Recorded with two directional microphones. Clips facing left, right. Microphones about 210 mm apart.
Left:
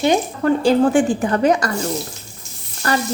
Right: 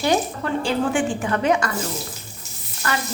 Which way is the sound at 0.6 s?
40° left (ahead or behind).